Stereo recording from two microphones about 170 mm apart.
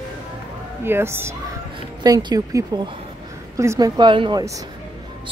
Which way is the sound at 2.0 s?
25° right (ahead or behind).